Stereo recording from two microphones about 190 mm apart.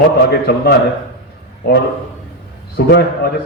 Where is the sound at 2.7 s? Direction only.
55° left (ahead or behind).